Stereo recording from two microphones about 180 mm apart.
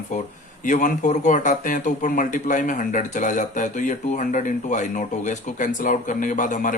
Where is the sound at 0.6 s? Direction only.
45° left (ahead or behind).